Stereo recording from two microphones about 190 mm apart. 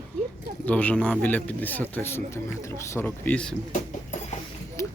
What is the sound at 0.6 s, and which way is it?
A man's voice, 10° left (ahead or behind).